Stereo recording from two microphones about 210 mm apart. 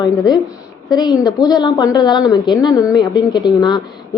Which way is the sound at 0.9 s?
20° left (ahead or behind).